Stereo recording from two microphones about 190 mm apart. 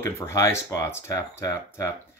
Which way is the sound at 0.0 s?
15° left (ahead or behind).